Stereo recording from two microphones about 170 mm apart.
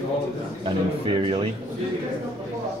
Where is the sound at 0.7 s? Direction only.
30° right (ahead or behind).